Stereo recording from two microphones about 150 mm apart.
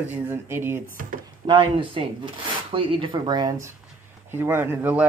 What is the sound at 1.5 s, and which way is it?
Speech, 35° right (ahead or behind).